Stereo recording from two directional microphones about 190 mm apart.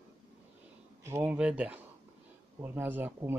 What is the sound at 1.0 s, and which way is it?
Speech, 10° right (ahead or behind).